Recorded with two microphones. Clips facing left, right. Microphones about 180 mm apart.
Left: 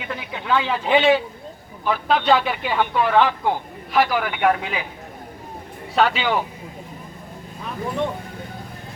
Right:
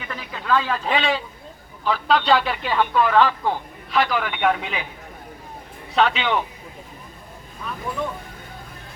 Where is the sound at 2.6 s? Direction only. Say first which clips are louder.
Right 2 dB; 15° left (ahead or behind).